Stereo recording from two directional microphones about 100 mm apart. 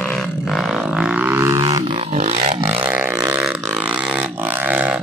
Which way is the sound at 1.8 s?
75° right (ahead or behind).